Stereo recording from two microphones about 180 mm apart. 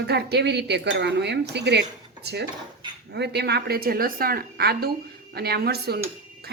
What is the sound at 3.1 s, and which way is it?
Speech, 70° right (ahead or behind).